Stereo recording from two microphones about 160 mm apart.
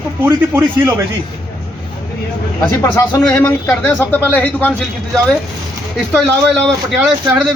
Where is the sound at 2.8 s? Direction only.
15° left (ahead or behind).